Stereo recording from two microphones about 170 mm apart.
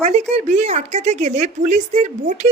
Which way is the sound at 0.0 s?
40° right (ahead or behind).